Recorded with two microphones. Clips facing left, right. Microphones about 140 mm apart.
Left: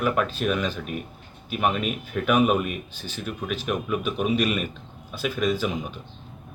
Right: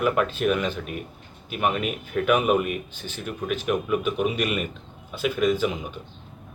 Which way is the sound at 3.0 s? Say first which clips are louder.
Right 1 dB; 15° right (ahead or behind).